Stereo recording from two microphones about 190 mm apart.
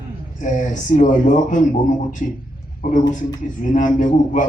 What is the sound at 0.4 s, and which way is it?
A man's voice, 40° left (ahead or behind).